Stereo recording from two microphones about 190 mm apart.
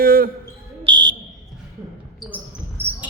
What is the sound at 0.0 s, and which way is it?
Speech, 50° right (ahead or behind).